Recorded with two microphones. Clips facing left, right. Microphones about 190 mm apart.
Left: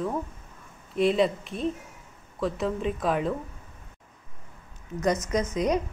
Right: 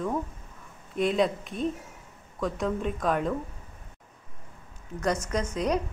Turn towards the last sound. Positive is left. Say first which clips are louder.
# left 3 dB
turn(degrees=5)  # may be behind; listen again after turning